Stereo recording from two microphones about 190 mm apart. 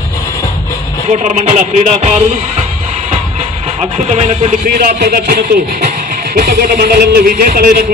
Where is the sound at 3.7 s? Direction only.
35° right (ahead or behind).